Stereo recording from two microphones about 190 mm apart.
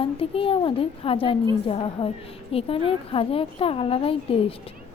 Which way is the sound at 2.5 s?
30° left (ahead or behind).